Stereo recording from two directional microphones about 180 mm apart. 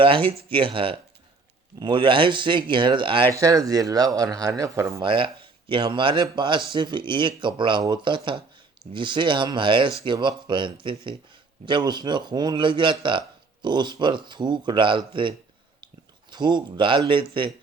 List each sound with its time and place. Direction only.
0.0 s a man's voice: 30° right (ahead or behind)
5.0 s a man's voice: 30° right (ahead or behind)